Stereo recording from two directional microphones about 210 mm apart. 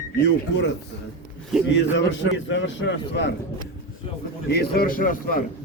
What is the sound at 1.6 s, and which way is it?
A man's voice, 60° left (ahead or behind).